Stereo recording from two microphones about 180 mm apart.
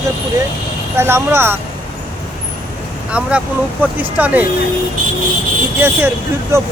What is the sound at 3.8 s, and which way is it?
Speech, 10° right (ahead or behind).